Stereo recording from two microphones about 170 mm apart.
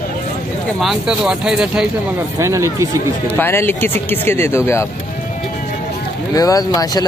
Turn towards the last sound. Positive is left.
turn(degrees=20)  # may be behind; listen again after turning